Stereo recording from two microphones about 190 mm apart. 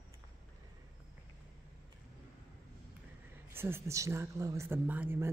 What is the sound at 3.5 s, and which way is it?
Speech, 10° right (ahead or behind).